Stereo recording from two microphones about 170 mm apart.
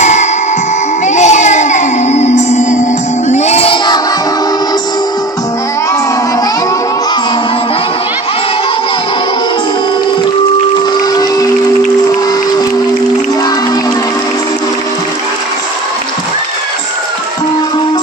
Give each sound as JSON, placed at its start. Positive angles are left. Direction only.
{"t": 0.0, "sound": "music", "side_deg": 45}
{"t": 3.2, "sound": "child singing", "side_deg": 40}